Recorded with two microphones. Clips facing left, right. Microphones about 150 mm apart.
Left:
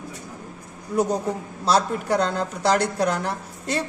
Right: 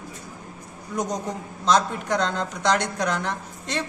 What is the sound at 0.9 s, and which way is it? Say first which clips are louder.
Speech: left 5 dB; 10° left (ahead or behind).